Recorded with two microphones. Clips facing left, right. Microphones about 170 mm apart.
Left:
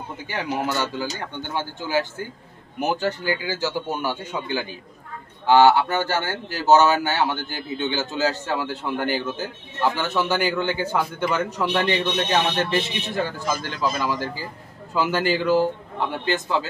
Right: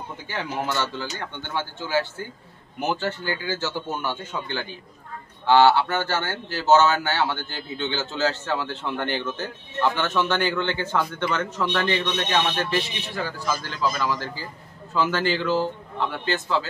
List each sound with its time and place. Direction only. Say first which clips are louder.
0.3 s speech: left 2 dB; 10° left (ahead or behind)